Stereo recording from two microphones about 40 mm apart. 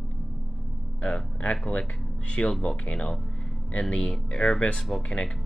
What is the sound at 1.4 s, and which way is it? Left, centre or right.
Speech, left.